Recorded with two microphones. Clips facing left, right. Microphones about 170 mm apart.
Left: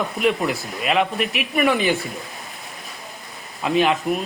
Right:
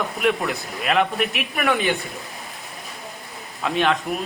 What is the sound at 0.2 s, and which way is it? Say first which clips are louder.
Speech: left 1 dB; centre (ahead or behind).